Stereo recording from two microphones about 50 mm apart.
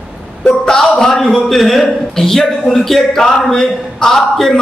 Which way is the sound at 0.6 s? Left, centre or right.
Centre.